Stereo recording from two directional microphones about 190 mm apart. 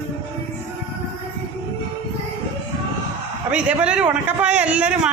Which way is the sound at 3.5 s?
5° right (ahead or behind).